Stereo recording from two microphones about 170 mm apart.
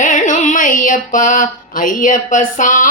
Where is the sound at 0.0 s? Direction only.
50° left (ahead or behind).